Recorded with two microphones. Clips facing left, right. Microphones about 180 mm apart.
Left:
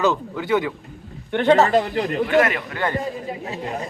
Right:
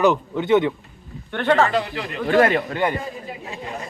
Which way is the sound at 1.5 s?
40° left (ahead or behind).